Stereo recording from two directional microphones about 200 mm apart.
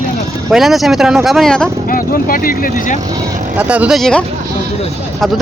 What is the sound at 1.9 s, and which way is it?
Speech, 45° left (ahead or behind).